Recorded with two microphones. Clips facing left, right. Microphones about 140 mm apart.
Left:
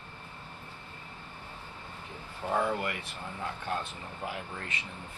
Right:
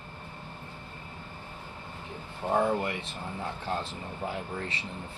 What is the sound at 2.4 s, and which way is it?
Speech, 20° right (ahead or behind).